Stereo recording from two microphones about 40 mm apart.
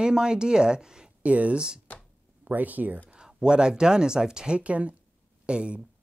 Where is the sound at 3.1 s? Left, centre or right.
Centre.